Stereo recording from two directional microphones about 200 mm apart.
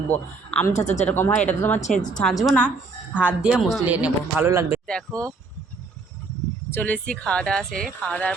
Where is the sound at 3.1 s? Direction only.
5° right (ahead or behind).